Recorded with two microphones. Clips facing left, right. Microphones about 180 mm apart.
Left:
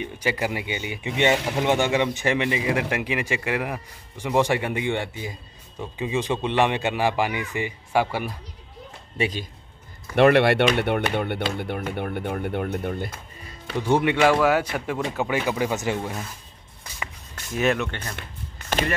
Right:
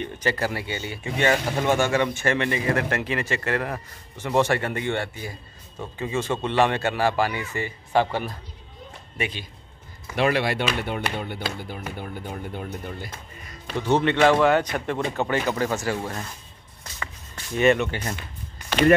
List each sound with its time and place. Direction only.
0.0 s speech: 10° left (ahead or behind)
9.2 s speech: 40° left (ahead or behind)
10.1 s speech: 60° left (ahead or behind)
13.7 s speech: 10° left (ahead or behind)
17.6 s speech: centre (ahead or behind)